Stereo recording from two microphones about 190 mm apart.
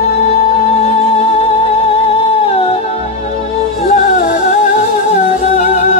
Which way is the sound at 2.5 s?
30° left (ahead or behind).